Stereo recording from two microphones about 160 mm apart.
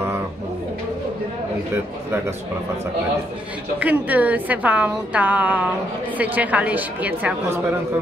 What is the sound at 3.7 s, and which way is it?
A woman's voice, 10° right (ahead or behind).